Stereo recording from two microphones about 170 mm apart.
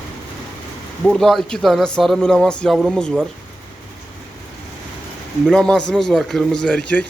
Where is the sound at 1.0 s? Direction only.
Centre (ahead or behind).